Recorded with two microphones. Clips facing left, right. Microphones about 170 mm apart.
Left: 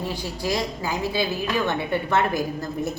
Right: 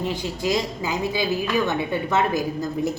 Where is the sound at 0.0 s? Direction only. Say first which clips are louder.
Right 3 dB; 20° right (ahead or behind).